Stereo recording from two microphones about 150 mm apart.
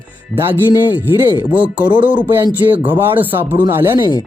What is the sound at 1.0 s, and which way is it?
Speech, 15° right (ahead or behind).